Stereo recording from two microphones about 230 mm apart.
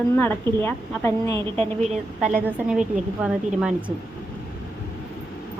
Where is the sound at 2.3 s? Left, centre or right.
Centre.